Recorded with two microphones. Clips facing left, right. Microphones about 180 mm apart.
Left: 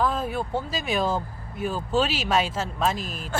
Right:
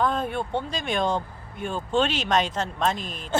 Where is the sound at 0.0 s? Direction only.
5° left (ahead or behind).